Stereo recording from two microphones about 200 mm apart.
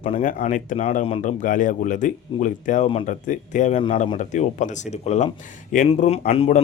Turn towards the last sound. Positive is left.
turn(degrees=30)  # may be behind; listen again after turning